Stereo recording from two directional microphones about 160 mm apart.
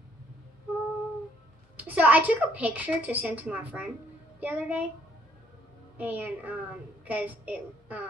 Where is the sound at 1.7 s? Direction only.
10° right (ahead or behind).